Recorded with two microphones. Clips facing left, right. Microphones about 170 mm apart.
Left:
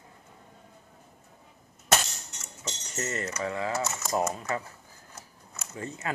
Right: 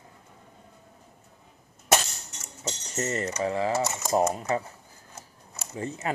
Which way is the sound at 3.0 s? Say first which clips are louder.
Right 4 dB; 30° right (ahead or behind).